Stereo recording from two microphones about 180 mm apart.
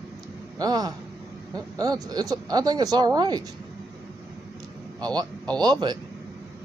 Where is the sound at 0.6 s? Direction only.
20° right (ahead or behind).